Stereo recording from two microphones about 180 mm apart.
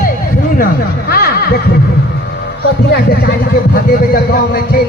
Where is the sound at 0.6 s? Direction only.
55° left (ahead or behind).